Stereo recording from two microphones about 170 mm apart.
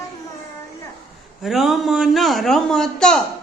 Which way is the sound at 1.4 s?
Centre (ahead or behind).